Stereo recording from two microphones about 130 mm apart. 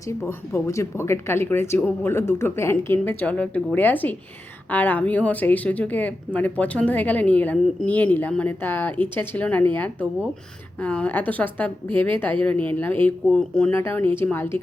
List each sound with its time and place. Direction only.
0.1 s speech: 20° left (ahead or behind)